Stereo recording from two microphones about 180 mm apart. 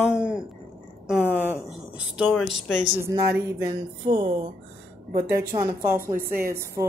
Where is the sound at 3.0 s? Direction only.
15° right (ahead or behind).